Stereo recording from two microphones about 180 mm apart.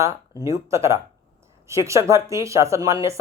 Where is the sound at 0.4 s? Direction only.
15° right (ahead or behind).